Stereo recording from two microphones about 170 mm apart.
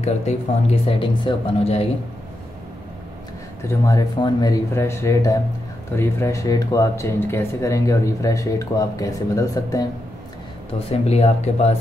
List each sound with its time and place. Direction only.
0.7 s speech: 35° left (ahead or behind)
3.6 s speech: 20° left (ahead or behind)
10.9 s speech: 40° left (ahead or behind)